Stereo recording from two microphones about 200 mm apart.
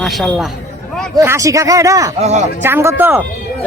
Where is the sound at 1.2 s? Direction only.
15° right (ahead or behind).